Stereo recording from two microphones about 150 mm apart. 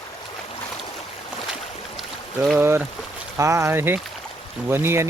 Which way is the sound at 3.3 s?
20° right (ahead or behind).